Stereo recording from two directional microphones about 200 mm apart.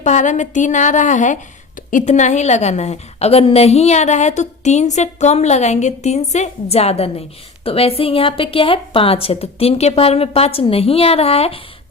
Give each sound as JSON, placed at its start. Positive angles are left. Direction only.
{"t": 0.0, "sound": "a woman's voice", "side_deg": 35}